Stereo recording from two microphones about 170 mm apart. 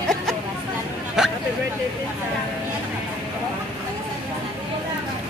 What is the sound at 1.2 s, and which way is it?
Vehicle, 5° right (ahead or behind).